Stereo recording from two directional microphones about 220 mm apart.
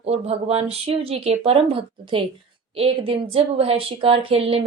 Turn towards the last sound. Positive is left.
turn(degrees=-25)  # may be behind; listen again after turning